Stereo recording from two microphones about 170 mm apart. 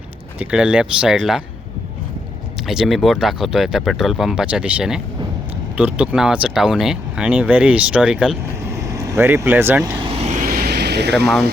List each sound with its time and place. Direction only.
0.3 s speech: 5° right (ahead or behind)
2.6 s speech: centre (ahead or behind)
8.6 s speech: 15° right (ahead or behind)
10.0 s vehicle: 35° right (ahead or behind); by 11.3 s 75° right (ahead or behind)